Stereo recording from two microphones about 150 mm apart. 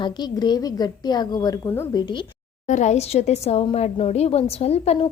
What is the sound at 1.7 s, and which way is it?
Speech, 15° left (ahead or behind).